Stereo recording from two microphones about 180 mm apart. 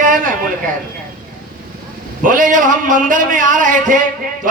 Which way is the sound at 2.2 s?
45° right (ahead or behind).